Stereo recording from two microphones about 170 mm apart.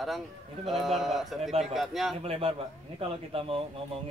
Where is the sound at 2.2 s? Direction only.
35° right (ahead or behind).